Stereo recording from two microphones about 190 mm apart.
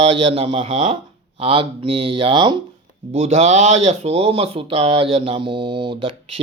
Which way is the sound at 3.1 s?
35° right (ahead or behind).